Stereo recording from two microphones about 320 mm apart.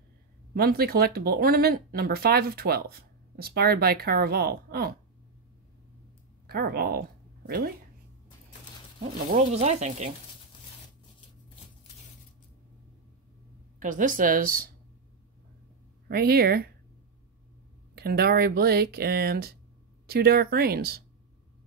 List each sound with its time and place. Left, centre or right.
0.6 s speech: right
6.4 s speech: right
9.0 s speech: centre
13.7 s speech: right
16.1 s speech: right
17.9 s speech: right